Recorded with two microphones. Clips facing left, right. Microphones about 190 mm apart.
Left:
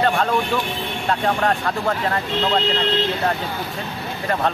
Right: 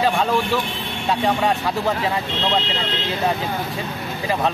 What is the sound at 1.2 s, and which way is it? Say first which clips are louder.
Speech: right 1 dB; 5° right (ahead or behind).